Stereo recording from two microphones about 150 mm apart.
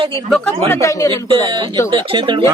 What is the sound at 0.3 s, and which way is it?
Speech, 5° left (ahead or behind).